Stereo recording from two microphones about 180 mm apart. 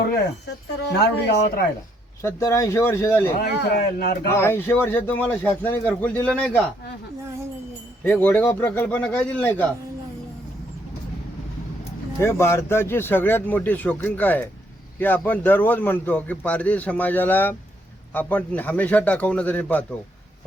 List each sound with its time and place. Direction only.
0.0 s a sound: 65° left (ahead or behind)
0.9 s speech: 60° left (ahead or behind)
2.2 s a man's voice: 15° left (ahead or behind)
3.4 s speech: 65° left (ahead or behind)
4.3 s a man's voice: 15° left (ahead or behind)
8.0 s a man's voice: 10° left (ahead or behind)
12.2 s a man's voice: 15° left (ahead or behind)